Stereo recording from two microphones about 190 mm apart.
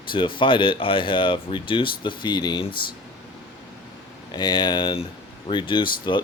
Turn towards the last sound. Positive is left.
turn(degrees=25)  # may be behind; listen again after turning